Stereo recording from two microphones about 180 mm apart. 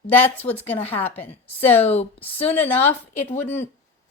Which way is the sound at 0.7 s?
10° left (ahead or behind).